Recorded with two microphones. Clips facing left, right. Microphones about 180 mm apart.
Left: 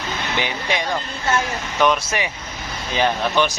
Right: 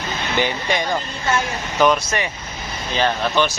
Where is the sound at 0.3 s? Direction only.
Centre (ahead or behind).